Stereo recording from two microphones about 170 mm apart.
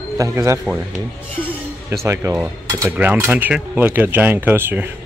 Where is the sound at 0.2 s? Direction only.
15° right (ahead or behind).